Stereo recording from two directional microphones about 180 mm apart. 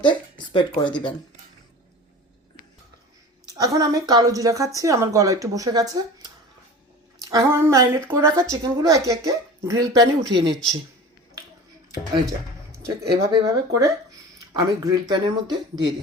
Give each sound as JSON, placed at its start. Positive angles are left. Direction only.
{"t": 0.0, "sound": "speech", "side_deg": 25}
{"t": 3.5, "sound": "speech", "side_deg": -20}
{"t": 12.7, "sound": "speech", "side_deg": -15}
{"t": 14.5, "sound": "speech", "side_deg": -25}